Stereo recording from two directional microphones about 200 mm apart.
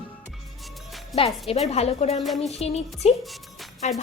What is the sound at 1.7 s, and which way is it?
A woman's voice, 30° left (ahead or behind).